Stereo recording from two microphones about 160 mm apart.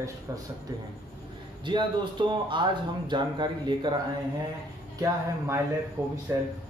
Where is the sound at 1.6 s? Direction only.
30° right (ahead or behind).